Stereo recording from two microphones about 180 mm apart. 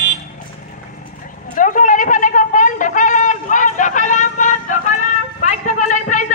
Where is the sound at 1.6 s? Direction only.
45° left (ahead or behind).